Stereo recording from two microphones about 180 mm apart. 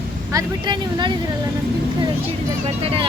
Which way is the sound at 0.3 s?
20° right (ahead or behind).